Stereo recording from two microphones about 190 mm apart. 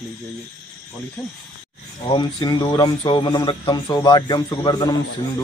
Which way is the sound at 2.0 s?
25° left (ahead or behind).